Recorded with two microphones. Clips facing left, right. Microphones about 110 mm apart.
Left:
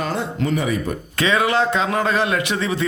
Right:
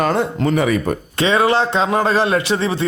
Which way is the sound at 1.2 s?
30° right (ahead or behind).